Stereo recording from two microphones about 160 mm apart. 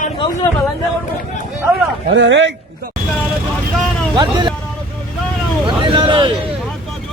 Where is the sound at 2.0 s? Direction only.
90° right.